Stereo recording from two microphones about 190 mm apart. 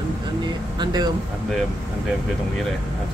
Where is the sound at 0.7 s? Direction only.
20° right (ahead or behind).